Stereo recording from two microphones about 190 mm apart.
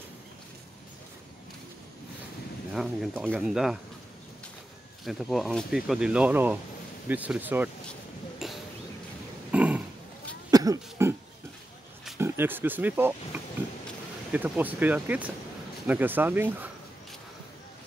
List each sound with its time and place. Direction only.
2.7 s speech: 5° right (ahead or behind)
5.0 s speech: centre (ahead or behind)
8.4 s a sound: centre (ahead or behind)
9.5 s dog: 5° right (ahead or behind)
10.5 s cough: 20° right (ahead or behind)
12.2 s speech: 10° right (ahead or behind)